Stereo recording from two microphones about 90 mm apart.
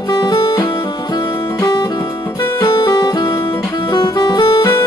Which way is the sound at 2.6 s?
50° left (ahead or behind).